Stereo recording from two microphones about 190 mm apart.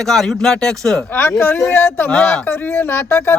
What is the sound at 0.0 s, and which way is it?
Speech, centre (ahead or behind).